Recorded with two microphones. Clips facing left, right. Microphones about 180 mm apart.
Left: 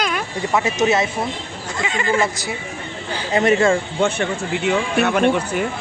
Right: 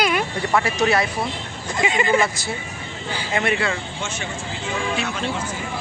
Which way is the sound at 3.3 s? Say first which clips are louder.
Left 8 dB; 40° left (ahead or behind).